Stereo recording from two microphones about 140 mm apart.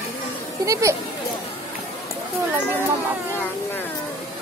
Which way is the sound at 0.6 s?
25° right (ahead or behind).